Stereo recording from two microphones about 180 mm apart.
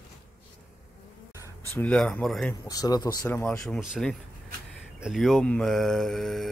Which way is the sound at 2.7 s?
20° left (ahead or behind).